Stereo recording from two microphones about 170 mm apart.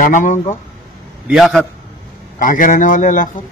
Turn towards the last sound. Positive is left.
turn(degrees=50)  # may be behind; listen again after turning